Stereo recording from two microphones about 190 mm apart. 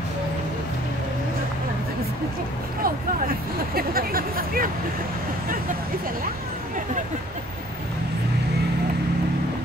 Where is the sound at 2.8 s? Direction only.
50° right (ahead or behind).